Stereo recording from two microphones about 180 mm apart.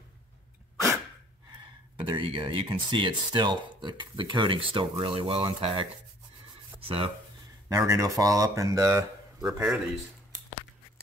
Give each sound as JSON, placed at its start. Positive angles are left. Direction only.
{"t": 2.0, "sound": "speech", "side_deg": -25}
{"t": 7.7, "sound": "speech", "side_deg": -20}
{"t": 9.5, "sound": "speech", "side_deg": -5}